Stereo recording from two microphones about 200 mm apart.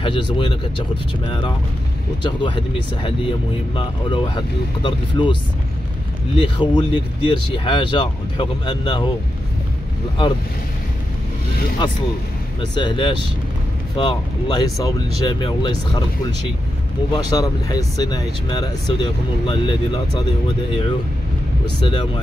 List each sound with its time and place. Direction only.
0.0 s speech: 25° left (ahead or behind)
2.2 s speech: 25° left (ahead or behind)
12.7 s speech: 25° left (ahead or behind)
17.1 s speech: 20° left (ahead or behind)
21.8 s speech: 25° left (ahead or behind)